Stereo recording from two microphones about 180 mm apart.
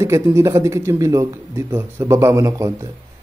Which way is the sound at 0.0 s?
15° right (ahead or behind).